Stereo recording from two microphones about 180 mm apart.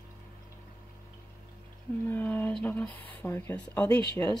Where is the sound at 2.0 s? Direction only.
10° left (ahead or behind).